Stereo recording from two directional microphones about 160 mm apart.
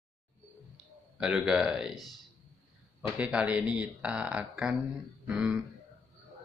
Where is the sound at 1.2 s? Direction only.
5° right (ahead or behind).